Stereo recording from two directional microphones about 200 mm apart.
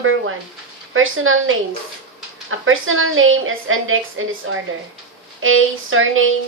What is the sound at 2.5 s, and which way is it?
A woman's voice, 90° right.